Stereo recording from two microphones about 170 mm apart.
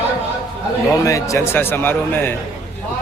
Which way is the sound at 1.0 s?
20° left (ahead or behind).